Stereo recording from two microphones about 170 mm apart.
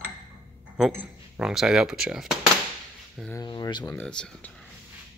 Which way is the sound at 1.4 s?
5° right (ahead or behind).